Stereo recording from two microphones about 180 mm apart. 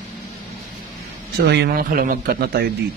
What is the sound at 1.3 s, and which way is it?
Speech, 65° right (ahead or behind).